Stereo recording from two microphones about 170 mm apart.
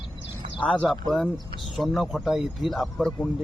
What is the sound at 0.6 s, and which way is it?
Speech, 5° left (ahead or behind).